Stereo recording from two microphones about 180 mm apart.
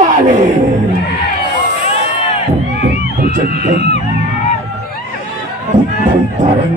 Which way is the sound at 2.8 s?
55° right (ahead or behind).